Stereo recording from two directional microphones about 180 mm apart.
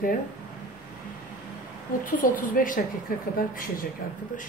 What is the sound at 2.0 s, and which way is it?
Speech, 50° left (ahead or behind).